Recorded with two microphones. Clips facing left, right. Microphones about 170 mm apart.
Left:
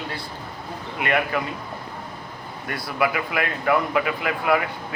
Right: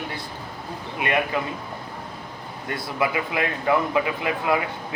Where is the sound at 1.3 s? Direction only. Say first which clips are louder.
Even; 20° right (ahead or behind).